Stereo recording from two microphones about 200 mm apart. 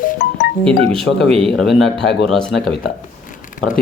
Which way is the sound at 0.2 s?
55° left (ahead or behind).